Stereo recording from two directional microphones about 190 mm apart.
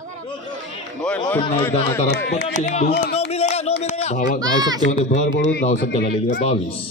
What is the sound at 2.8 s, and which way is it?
Speech, 35° left (ahead or behind).